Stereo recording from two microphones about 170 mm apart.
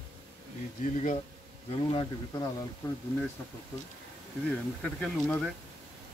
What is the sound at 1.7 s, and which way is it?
Speech, 35° left (ahead or behind).